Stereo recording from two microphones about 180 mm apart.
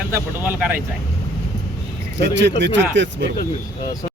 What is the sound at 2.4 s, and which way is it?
Speech, 75° right (ahead or behind).